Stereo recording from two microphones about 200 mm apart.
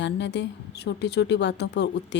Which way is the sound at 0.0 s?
60° left (ahead or behind).